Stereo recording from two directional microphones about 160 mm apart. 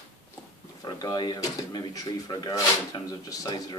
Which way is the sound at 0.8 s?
25° left (ahead or behind).